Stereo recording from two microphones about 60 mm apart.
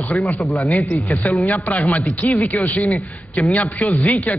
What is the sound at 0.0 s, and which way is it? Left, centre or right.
A man's voice, left.